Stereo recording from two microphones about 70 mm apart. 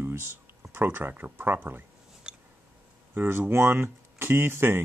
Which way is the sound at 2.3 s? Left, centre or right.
Centre.